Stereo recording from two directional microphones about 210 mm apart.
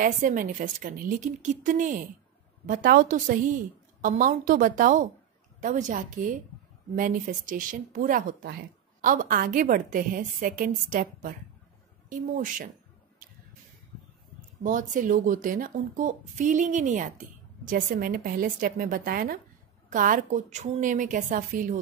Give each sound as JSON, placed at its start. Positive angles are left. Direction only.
{"t": 0.0, "sound": "speech", "side_deg": -40}
{"t": 13.2, "sound": "a sound", "side_deg": -40}
{"t": 14.6, "sound": "speech", "side_deg": -40}